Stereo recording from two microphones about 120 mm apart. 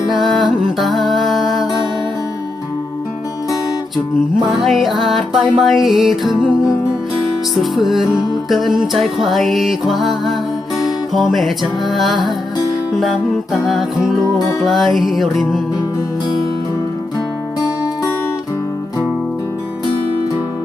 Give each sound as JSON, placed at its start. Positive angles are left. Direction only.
{"t": 0.1, "sound": "music", "side_deg": 0}
{"t": 4.4, "sound": "music", "side_deg": 0}
{"t": 13.5, "sound": "music", "side_deg": 0}